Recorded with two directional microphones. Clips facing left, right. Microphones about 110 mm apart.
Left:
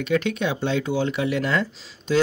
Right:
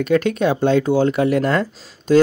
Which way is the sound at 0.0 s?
45° right (ahead or behind).